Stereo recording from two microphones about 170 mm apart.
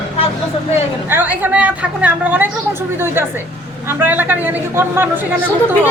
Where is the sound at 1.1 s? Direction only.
10° right (ahead or behind).